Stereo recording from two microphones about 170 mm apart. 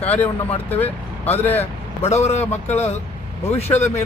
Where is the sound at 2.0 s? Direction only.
40° left (ahead or behind).